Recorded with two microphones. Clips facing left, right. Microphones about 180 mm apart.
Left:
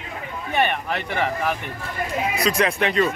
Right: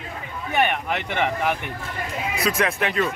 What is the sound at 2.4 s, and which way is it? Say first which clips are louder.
Speech: left 1 dB; centre (ahead or behind).